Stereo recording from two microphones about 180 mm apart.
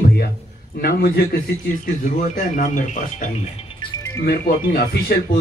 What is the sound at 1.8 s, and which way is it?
Speech, 50° left (ahead or behind).